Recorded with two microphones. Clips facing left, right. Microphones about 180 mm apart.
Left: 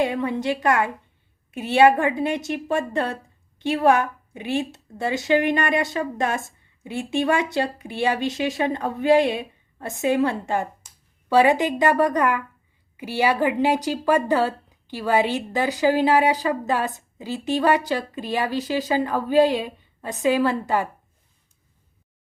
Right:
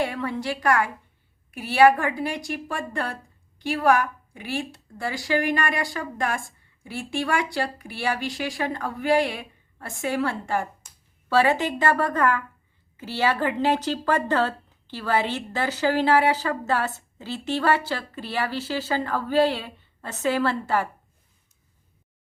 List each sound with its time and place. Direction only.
0.0 s a woman's voice: 20° left (ahead or behind)